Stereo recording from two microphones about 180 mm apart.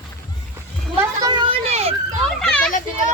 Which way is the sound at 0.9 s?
20° right (ahead or behind).